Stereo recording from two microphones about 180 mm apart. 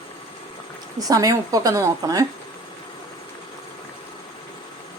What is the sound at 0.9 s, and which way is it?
A woman's voice, 20° right (ahead or behind).